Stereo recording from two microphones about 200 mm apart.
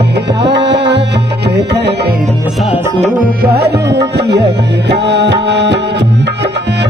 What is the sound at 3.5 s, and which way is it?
Tabla, 55° right (ahead or behind).